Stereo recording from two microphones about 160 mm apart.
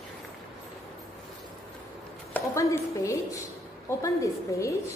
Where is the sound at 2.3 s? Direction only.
20° left (ahead or behind).